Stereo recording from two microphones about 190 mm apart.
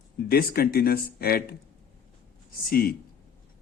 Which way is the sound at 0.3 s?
55° left (ahead or behind).